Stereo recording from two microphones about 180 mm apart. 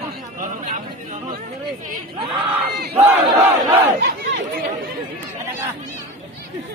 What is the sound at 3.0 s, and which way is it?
Crowd, 15° right (ahead or behind).